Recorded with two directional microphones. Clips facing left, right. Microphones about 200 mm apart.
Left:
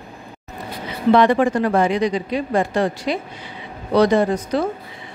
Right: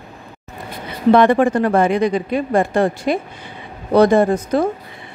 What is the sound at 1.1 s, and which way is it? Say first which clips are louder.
A woman's voice: right 2 dB; 50° right (ahead or behind).